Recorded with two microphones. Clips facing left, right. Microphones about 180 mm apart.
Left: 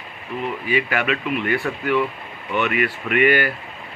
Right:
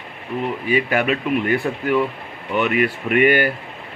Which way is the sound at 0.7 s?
40° right (ahead or behind).